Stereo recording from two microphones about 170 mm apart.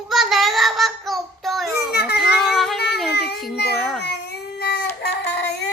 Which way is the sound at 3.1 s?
70° left (ahead or behind).